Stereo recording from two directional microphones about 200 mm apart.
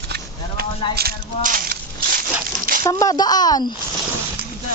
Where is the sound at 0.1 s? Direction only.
50° right (ahead or behind).